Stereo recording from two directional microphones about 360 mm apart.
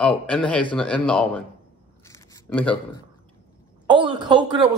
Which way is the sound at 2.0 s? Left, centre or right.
Centre.